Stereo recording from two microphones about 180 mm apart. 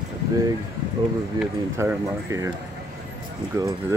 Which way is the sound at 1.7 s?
15° right (ahead or behind).